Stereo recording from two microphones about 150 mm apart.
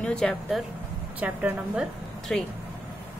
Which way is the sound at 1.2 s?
10° right (ahead or behind).